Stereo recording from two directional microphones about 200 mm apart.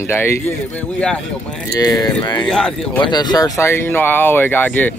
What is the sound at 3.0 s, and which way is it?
Speech, 20° left (ahead or behind).